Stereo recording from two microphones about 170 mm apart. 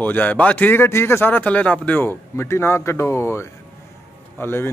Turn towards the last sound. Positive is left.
turn(degrees=15)  # may be behind; listen again after turning